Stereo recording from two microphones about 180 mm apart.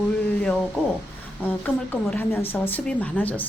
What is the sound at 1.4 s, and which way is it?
A woman's voice, 10° left (ahead or behind).